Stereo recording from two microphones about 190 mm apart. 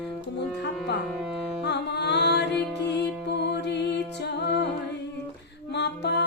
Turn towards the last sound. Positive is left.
turn(degrees=65)  # may be behind; listen again after turning